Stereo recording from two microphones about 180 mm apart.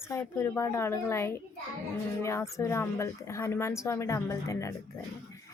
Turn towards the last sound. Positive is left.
turn(degrees=15)  # may be behind; listen again after turning